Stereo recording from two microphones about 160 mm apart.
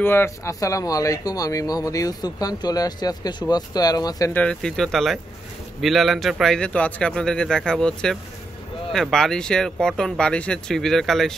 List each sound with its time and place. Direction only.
0.0 s a man's voice: 15° left (ahead or behind)
4.3 s a man's voice: 10° left (ahead or behind)